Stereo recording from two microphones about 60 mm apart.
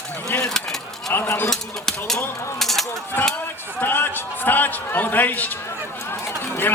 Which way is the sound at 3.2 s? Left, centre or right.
Left.